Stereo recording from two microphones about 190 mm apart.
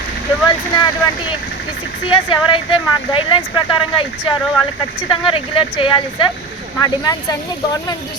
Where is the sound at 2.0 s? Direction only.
25° left (ahead or behind).